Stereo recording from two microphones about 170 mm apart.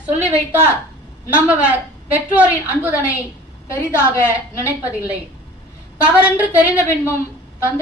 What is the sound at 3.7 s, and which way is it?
Speech, 15° left (ahead or behind).